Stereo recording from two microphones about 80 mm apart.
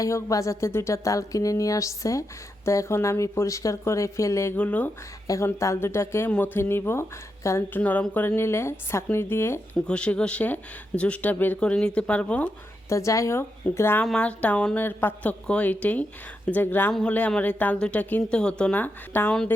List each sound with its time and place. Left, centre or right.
0.0 s speech: left
4.5 s a woman's voice: centre
5.5 s a woman's voice: left
7.7 s a woman's voice: centre
8.4 s speech: left
9.8 s speech: centre
12.9 s a woman's voice: left
14.0 s speech: centre
14.8 s a woman's voice: left
16.9 s speech: centre